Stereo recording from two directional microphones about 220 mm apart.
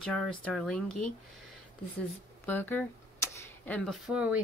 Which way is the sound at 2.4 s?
10° left (ahead or behind).